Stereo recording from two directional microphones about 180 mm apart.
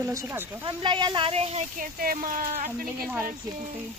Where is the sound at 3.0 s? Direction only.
10° right (ahead or behind).